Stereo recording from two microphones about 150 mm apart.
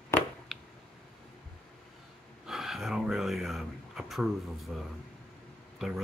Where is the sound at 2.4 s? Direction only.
Centre (ahead or behind).